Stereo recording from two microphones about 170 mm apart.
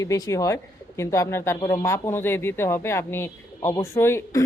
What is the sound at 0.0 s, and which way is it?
Speech, 20° left (ahead or behind).